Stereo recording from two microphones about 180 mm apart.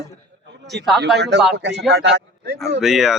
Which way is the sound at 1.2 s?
70° right (ahead or behind).